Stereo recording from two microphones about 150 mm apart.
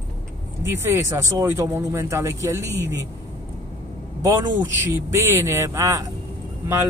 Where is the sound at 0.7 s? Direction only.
20° right (ahead or behind).